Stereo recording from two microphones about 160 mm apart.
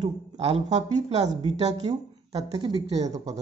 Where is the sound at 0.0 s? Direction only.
40° right (ahead or behind).